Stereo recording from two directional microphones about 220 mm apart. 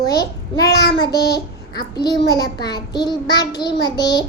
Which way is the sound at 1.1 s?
50° left (ahead or behind).